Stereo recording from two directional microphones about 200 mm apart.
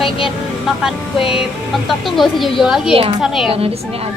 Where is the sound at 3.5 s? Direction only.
30° right (ahead or behind).